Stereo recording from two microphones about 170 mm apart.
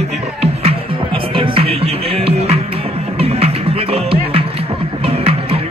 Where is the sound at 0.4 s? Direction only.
35° right (ahead or behind).